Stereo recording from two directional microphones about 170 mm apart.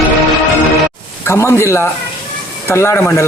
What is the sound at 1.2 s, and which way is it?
Speech, 15° left (ahead or behind).